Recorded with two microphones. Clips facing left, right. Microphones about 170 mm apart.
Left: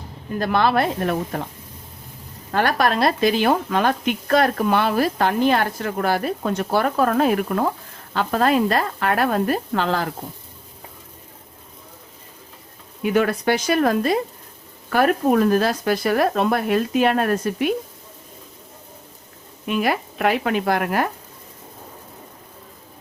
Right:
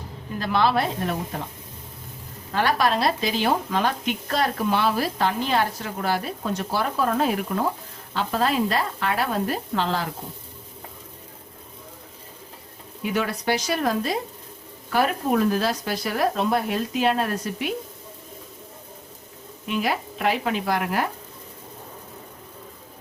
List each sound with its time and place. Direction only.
0.3 s speech: 50° left (ahead or behind)
2.5 s speech: 50° left (ahead or behind)
13.0 s speech: 55° left (ahead or behind)
19.6 s speech: 55° left (ahead or behind)